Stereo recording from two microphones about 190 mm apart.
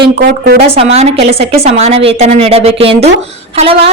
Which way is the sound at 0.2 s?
55° right (ahead or behind).